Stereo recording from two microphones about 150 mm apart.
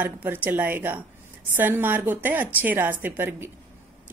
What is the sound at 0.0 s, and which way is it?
Speech, 10° right (ahead or behind).